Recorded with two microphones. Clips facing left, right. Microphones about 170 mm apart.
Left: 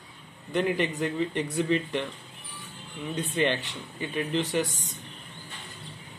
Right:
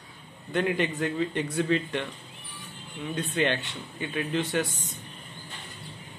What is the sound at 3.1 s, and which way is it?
Speech, 20° left (ahead or behind).